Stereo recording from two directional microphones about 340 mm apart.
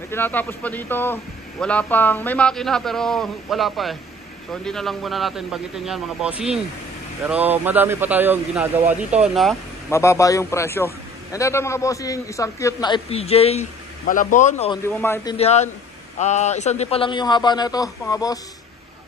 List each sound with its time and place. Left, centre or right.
0.1 s a man's voice: centre
15.3 s a man's voice: centre